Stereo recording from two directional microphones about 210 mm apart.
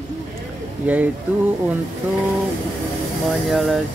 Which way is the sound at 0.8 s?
5° right (ahead or behind).